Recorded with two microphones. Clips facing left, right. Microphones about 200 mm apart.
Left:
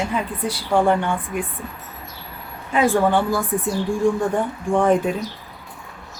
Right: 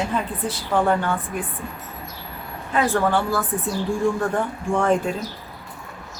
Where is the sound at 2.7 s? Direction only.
15° left (ahead or behind).